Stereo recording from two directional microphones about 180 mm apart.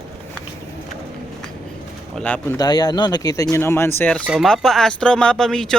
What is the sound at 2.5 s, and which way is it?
Speech, 20° left (ahead or behind).